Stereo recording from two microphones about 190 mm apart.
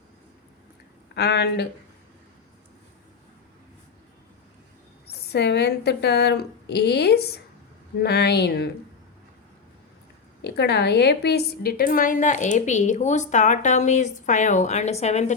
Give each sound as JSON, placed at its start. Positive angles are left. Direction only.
{"t": 1.1, "sound": "a woman's voice", "side_deg": 60}
{"t": 5.0, "sound": "a woman's voice", "side_deg": 60}
{"t": 10.4, "sound": "a woman's voice", "side_deg": 60}